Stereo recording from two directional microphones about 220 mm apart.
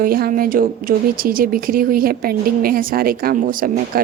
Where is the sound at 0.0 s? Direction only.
40° right (ahead or behind).